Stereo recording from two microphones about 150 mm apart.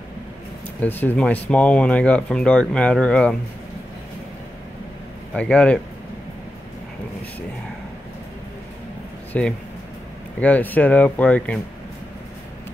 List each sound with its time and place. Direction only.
0.7 s speech: 10° left (ahead or behind)
5.3 s speech: 5° left (ahead or behind)
9.3 s speech: 10° left (ahead or behind)